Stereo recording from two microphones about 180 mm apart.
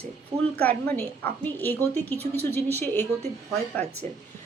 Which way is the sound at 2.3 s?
65° right (ahead or behind).